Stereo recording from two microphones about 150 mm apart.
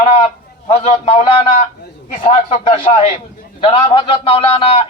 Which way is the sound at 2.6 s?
35° left (ahead or behind).